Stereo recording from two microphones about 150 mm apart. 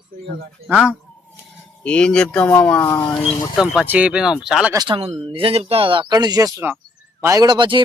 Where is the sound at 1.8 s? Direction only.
5° left (ahead or behind).